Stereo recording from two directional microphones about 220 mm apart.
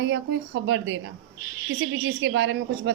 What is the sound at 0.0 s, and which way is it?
A woman's voice, 50° right (ahead or behind).